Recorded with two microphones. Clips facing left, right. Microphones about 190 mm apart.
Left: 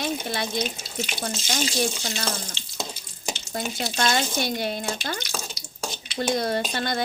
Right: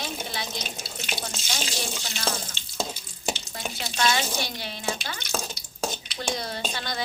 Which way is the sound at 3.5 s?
45° left (ahead or behind).